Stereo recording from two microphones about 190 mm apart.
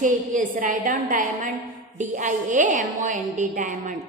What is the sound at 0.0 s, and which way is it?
A woman's voice, 45° right (ahead or behind).